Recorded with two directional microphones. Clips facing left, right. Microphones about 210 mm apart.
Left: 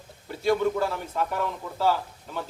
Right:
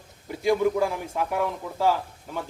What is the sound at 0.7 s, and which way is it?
A man's voice, 15° right (ahead or behind).